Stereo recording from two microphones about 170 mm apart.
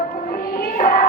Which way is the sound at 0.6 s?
60° left (ahead or behind).